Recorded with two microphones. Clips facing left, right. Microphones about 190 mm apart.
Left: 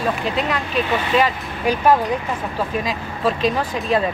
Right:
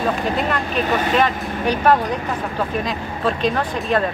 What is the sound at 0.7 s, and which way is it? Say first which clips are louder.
Speech: even; 45° right (ahead or behind).